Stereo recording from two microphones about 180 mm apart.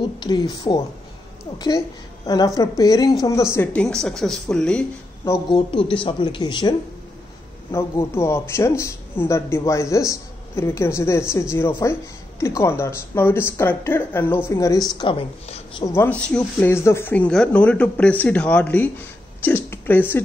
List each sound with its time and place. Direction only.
0.0 s speech: 25° left (ahead or behind)
2.2 s a man's voice: 20° left (ahead or behind); by 4.8 s 5° left (ahead or behind)
5.2 s speech: 20° left (ahead or behind)
7.7 s a man's voice: 15° left (ahead or behind)
15.0 s a woman's voice: 30° left (ahead or behind)
15.8 s a man's voice: 15° left (ahead or behind)